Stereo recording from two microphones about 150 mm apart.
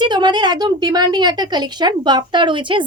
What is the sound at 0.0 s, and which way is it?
A woman's voice, 30° right (ahead or behind).